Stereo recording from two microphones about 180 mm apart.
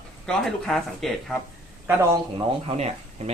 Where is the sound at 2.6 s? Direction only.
35° right (ahead or behind).